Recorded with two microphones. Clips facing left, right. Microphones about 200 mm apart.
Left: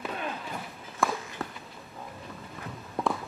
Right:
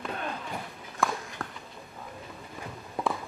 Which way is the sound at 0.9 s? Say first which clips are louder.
Left 1 dB; centre (ahead or behind).